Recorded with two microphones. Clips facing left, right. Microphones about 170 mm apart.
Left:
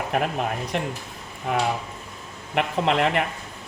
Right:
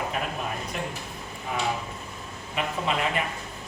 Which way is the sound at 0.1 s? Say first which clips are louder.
Left 6 dB; 65° left (ahead or behind).